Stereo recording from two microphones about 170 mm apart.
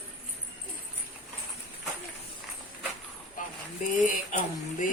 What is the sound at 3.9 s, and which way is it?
Speech, 50° left (ahead or behind).